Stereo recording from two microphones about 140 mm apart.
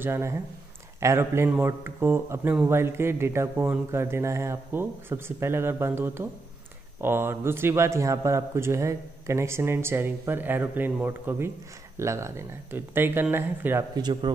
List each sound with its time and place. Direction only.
0.0 s a man's voice: 20° right (ahead or behind)
13.9 s speech: 30° right (ahead or behind)